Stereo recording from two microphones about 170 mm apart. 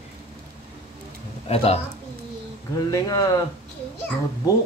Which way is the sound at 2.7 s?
20° left (ahead or behind).